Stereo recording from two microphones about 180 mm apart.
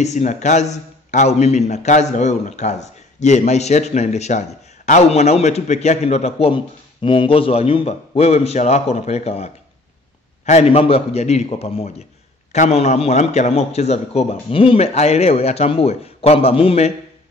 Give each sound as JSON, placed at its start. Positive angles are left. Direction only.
{"t": 0.0, "sound": "speech", "side_deg": 40}